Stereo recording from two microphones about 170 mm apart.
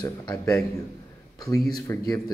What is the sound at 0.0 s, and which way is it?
Speech, 25° left (ahead or behind).